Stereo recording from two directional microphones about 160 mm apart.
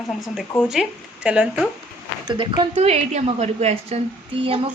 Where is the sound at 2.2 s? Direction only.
30° right (ahead or behind).